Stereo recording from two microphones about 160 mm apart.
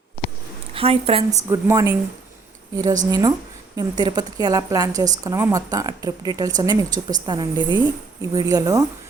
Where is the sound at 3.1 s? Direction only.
20° right (ahead or behind).